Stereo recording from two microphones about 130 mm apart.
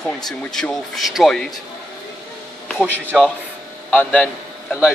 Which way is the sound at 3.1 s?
Centre (ahead or behind).